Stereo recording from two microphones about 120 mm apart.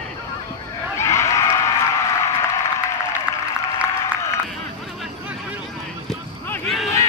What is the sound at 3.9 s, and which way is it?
Applause, 25° left (ahead or behind).